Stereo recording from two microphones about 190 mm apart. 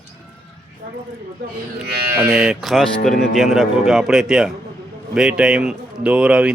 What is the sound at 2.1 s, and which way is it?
Speech, 5° right (ahead or behind).